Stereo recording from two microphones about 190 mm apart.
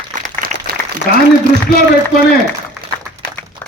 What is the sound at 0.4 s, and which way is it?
Applause, 50° right (ahead or behind).